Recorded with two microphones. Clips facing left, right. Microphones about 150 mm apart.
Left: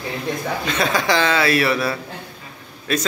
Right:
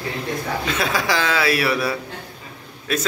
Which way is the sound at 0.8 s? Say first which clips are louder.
Left 4 dB; 5° right (ahead or behind).